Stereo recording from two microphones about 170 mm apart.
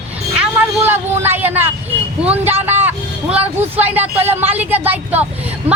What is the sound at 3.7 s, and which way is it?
Speech, 10° right (ahead or behind).